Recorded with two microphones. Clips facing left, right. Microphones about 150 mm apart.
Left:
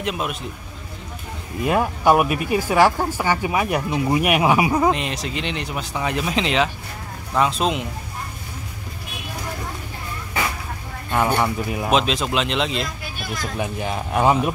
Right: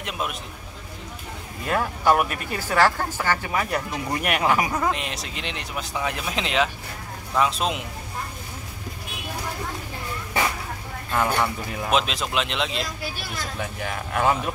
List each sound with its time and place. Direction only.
0.0 s speech: centre (ahead or behind)
1.6 s speech: 15° left (ahead or behind)
4.9 s speech: centre (ahead or behind)
11.3 s speech: 15° left (ahead or behind)
11.9 s speech: centre (ahead or behind)
13.6 s speech: 20° left (ahead or behind)